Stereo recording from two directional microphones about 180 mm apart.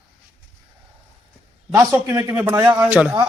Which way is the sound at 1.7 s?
15° right (ahead or behind).